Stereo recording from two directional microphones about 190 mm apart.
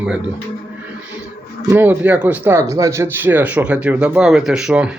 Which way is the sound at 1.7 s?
10° right (ahead or behind).